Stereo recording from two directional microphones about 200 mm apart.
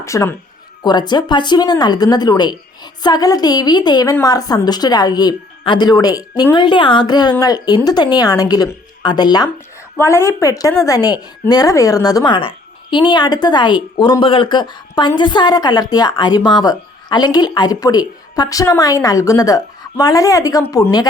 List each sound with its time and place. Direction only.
0.0 s a woman's voice: 15° left (ahead or behind)